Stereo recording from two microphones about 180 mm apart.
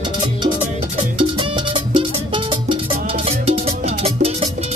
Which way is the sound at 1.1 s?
30° right (ahead or behind).